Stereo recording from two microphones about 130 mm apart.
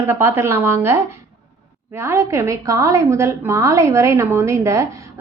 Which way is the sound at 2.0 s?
20° right (ahead or behind).